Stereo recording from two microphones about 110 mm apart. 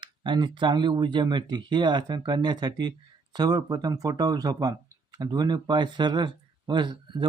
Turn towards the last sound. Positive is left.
turn(degrees=-45)  # may be behind; listen again after turning